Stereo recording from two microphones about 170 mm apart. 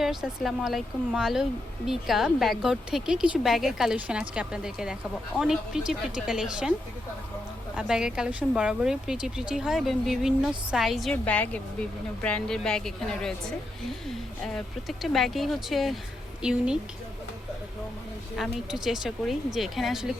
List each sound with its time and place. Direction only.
0.0 s a woman's voice: centre (ahead or behind)
7.8 s a woman's voice: 5° right (ahead or behind)
18.3 s a woman's voice: centre (ahead or behind)